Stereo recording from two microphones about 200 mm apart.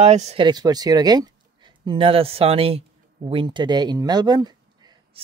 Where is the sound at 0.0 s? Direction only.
35° right (ahead or behind).